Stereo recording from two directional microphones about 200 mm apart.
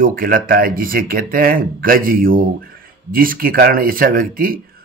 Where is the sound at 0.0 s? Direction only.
45° right (ahead or behind).